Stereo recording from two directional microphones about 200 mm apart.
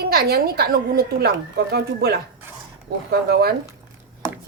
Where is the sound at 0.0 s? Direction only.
50° right (ahead or behind).